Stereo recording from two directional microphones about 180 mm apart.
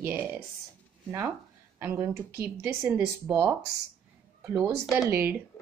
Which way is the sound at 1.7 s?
10° right (ahead or behind).